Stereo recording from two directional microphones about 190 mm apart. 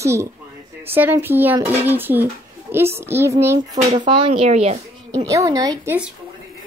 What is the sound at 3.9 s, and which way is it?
Speech, 35° right (ahead or behind).